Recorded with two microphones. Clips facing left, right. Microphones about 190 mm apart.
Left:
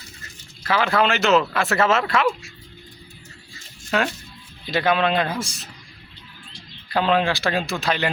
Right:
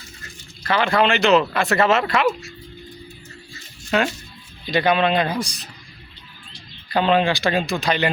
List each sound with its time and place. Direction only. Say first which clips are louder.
0.6 s speech: right 1 dB; 5° left (ahead or behind)
3.9 s speech: right 2 dB; centre (ahead or behind)
6.9 s speech: right 2 dB; centre (ahead or behind)